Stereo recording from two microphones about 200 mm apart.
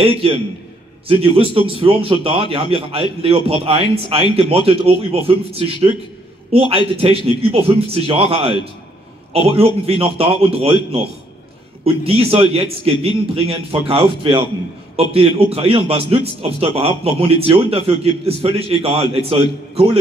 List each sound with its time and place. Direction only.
0.0 s a man's voice: 30° right (ahead or behind)
7.0 s a man's voice: 30° right (ahead or behind)